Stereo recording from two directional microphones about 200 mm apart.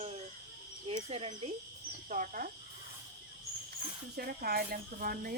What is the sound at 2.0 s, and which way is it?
Speech, 40° right (ahead or behind).